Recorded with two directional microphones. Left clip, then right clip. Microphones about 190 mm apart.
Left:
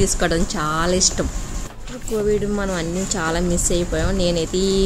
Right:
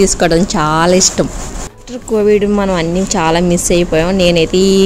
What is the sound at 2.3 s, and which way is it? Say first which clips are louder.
Speech: right 10 dB; 15° right (ahead or behind).